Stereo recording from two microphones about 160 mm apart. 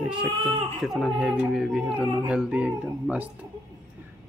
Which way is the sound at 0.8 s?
Centre (ahead or behind).